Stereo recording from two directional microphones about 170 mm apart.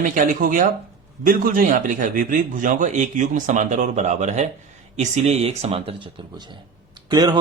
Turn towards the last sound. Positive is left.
turn(degrees=-25)  # may be behind; listen again after turning